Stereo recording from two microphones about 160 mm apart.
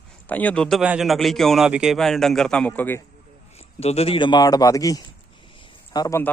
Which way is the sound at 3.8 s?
40° left (ahead or behind).